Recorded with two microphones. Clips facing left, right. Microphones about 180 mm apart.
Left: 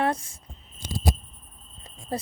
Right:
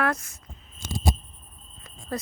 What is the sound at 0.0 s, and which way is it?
Speech, 30° left (ahead or behind).